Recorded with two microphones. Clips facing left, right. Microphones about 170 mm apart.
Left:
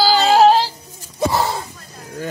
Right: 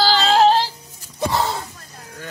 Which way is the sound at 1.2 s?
10° left (ahead or behind).